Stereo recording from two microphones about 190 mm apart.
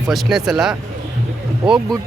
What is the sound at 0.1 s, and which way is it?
Speech, centre (ahead or behind).